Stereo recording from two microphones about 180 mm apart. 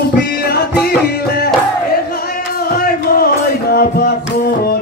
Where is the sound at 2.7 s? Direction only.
55° left (ahead or behind).